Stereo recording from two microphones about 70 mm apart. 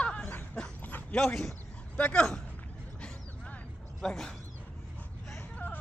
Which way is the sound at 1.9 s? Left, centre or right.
Centre.